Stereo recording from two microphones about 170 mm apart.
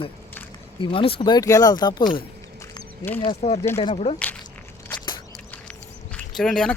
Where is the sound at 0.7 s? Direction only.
30° left (ahead or behind).